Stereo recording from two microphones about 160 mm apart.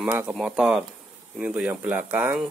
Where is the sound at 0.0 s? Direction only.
10° right (ahead or behind).